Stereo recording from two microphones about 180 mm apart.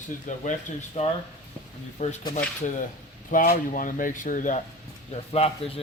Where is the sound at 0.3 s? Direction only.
45° left (ahead or behind).